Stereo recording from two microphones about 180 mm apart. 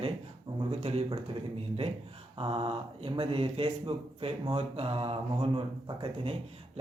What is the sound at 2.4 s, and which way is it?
A man's voice, 30° right (ahead or behind).